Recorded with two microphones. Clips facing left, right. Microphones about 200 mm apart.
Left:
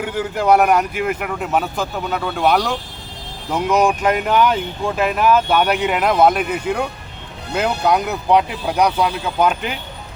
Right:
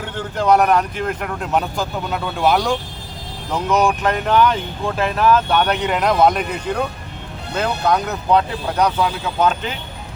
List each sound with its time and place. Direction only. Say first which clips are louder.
0.0 s speech: left 2 dB; 10° left (ahead or behind)
3.5 s speech: left 1 dB; 10° left (ahead or behind)